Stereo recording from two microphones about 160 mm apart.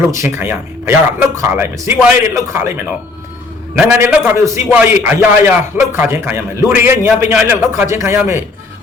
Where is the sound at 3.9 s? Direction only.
15° right (ahead or behind).